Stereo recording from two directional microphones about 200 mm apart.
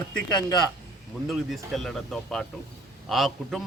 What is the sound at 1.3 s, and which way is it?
Speech, centre (ahead or behind).